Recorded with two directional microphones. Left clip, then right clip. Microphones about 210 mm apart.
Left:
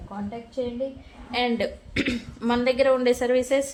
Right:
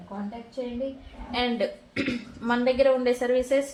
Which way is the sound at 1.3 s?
35° left (ahead or behind).